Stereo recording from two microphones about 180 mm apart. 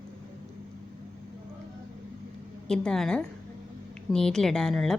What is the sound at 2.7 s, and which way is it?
A woman's voice, 5° left (ahead or behind).